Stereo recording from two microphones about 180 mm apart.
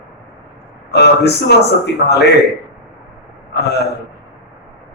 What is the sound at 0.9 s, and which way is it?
Speech, 65° left (ahead or behind).